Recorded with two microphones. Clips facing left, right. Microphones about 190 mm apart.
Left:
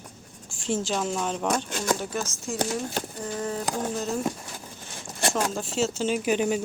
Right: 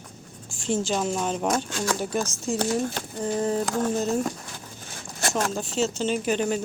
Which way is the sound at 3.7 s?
10° left (ahead or behind).